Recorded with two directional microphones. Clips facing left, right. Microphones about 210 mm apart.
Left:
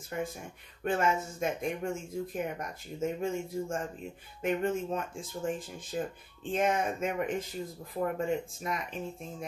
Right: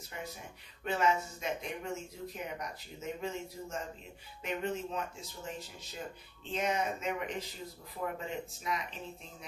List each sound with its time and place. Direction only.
0.1 s speech: 50° left (ahead or behind)